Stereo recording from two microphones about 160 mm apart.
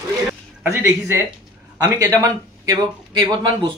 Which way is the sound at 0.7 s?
15° right (ahead or behind).